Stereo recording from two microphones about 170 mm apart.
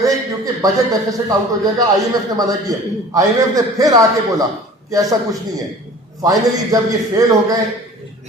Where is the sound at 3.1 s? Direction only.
20° right (ahead or behind).